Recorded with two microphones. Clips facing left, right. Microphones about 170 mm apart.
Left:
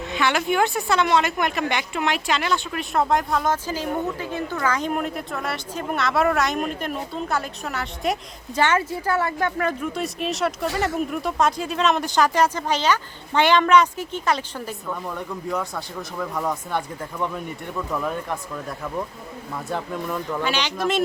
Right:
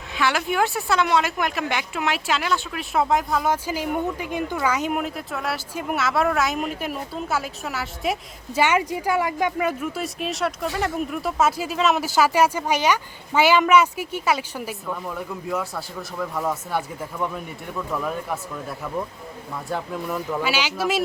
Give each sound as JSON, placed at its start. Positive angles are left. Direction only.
{"t": 0.1, "sound": "speech", "side_deg": 0}